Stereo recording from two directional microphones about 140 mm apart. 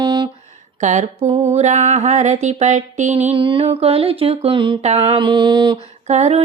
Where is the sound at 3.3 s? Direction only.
40° right (ahead or behind).